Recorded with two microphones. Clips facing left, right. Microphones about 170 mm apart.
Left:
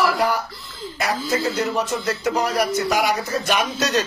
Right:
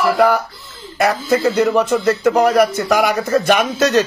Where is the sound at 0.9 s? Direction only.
55° right (ahead or behind).